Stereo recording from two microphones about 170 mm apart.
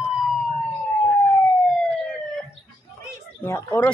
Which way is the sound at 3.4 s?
15° left (ahead or behind).